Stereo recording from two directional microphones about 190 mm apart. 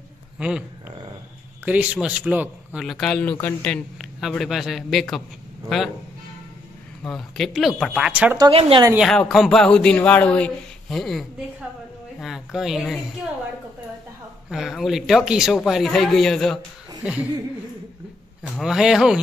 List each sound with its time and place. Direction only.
0.4 s speech: 5° right (ahead or behind)
7.0 s speech: centre (ahead or behind)
8.4 s speech: 30° right (ahead or behind)
8.9 s speech: centre (ahead or behind)
14.5 s speech: centre (ahead or behind)
18.4 s speech: centre (ahead or behind)